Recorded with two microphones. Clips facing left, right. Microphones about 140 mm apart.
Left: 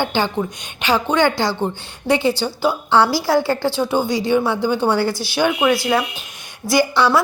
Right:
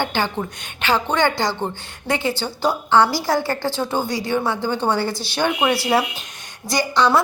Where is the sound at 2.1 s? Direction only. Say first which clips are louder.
Left 5 dB; 15° left (ahead or behind).